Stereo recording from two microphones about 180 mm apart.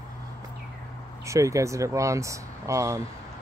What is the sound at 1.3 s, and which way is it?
Speech, 15° right (ahead or behind).